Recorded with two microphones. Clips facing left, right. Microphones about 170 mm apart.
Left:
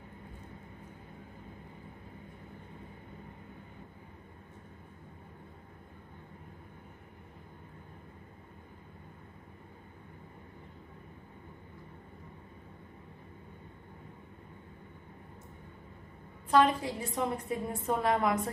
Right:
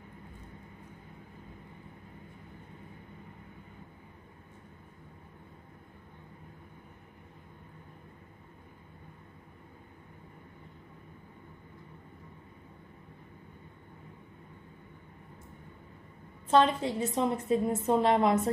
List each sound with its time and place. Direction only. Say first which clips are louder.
16.4 s a woman's voice: right 1 dB; 25° right (ahead or behind)